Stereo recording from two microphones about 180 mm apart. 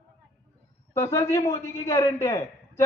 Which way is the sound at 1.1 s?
15° left (ahead or behind).